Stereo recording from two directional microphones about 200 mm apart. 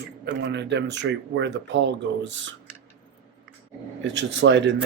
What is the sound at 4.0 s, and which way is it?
Speech, 65° right (ahead or behind).